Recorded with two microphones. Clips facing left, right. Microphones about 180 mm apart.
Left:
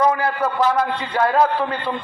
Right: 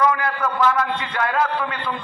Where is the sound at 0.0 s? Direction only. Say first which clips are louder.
Left 2 dB; 30° left (ahead or behind).